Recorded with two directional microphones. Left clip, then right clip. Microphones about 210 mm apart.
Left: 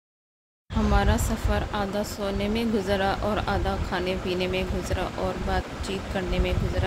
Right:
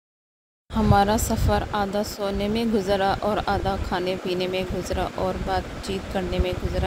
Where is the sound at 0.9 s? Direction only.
20° right (ahead or behind).